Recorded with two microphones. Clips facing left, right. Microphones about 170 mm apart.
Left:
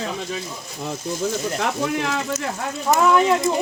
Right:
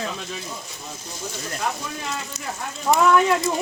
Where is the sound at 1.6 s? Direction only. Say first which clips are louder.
Left 4 dB; 75° left (ahead or behind).